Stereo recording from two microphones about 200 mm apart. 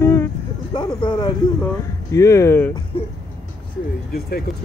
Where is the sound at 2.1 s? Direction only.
15° left (ahead or behind).